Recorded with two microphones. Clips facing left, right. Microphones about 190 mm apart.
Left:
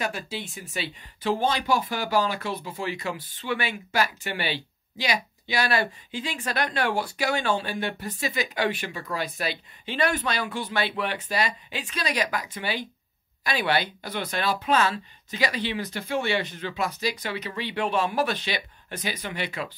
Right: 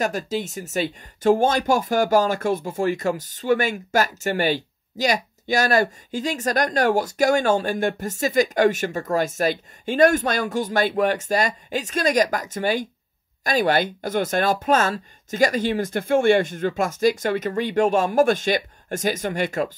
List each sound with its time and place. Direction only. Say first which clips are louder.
0.0 s speech: right 7 dB; 45° right (ahead or behind)